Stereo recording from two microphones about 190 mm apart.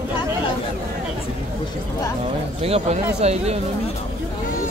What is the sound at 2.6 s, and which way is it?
Speech, 35° right (ahead or behind).